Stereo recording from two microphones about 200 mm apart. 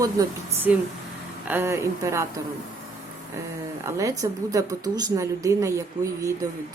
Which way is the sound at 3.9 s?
15° right (ahead or behind).